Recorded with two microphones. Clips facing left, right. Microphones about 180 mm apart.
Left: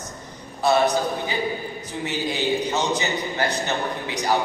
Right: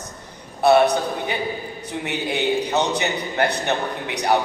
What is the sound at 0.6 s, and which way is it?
A man's voice, 60° right (ahead or behind).